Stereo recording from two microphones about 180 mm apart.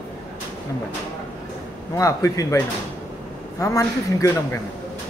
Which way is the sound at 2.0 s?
20° left (ahead or behind).